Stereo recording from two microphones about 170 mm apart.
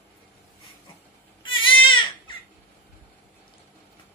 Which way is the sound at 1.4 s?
30° left (ahead or behind).